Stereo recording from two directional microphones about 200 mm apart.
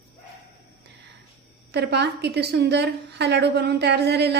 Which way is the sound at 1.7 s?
55° right (ahead or behind).